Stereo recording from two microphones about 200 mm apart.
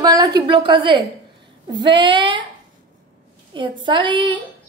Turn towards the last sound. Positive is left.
turn(degrees=-25)  # may be behind; listen again after turning